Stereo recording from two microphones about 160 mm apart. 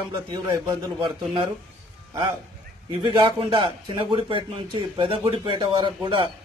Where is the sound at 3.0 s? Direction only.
30° right (ahead or behind).